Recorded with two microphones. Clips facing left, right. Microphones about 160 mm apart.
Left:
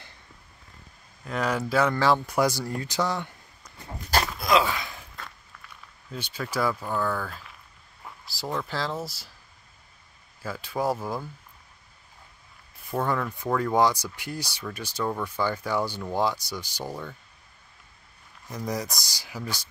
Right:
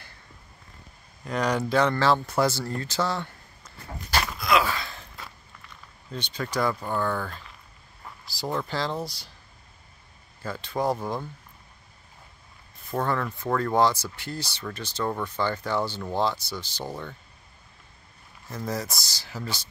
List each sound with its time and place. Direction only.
1.2 s speech: centre (ahead or behind)
4.5 s a sound: 15° left (ahead or behind)
6.1 s speech: 5° left (ahead or behind)
10.4 s speech: 5° left (ahead or behind)
12.9 s speech: 10° left (ahead or behind)
18.5 s speech: 15° left (ahead or behind)